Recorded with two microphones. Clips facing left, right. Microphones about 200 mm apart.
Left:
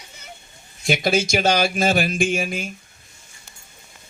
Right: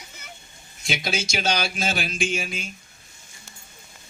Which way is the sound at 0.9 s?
55° left (ahead or behind).